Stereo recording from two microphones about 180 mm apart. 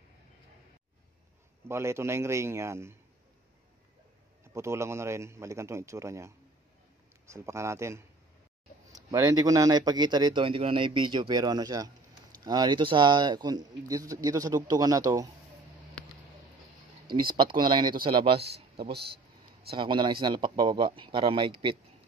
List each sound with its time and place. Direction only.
1.7 s a man's voice: 15° right (ahead or behind)
4.6 s a man's voice: 15° right (ahead or behind)
17.1 s a man's voice: 25° right (ahead or behind)
18.8 s speech: 60° right (ahead or behind)
19.7 s a man's voice: 30° right (ahead or behind)